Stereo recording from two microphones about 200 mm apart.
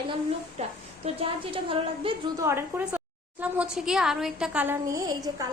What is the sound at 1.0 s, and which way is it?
A woman's voice, 25° right (ahead or behind).